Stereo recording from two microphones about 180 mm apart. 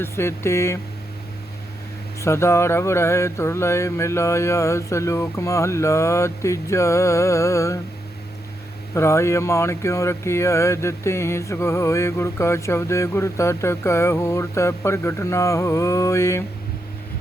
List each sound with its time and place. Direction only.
0.0 s speech: 15° left (ahead or behind)
2.2 s speech: 15° left (ahead or behind)
9.0 s speech: 15° left (ahead or behind)